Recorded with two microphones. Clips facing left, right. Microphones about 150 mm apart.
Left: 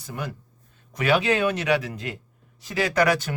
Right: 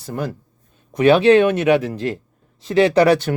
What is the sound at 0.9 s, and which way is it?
Speech, 25° right (ahead or behind).